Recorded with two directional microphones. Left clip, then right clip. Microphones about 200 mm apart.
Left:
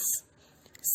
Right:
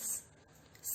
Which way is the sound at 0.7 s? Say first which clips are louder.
Left 11 dB; 40° left (ahead or behind).